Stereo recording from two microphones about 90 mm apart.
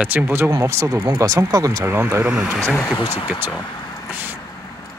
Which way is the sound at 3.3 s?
5° right (ahead or behind).